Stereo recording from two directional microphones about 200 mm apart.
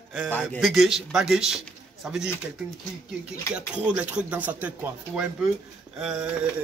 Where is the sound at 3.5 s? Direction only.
5° right (ahead or behind).